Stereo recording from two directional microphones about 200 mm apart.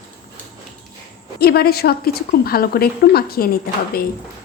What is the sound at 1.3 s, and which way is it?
A woman's voice, 50° left (ahead or behind).